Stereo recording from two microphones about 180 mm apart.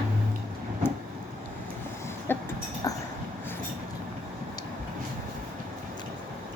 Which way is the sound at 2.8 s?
20° left (ahead or behind).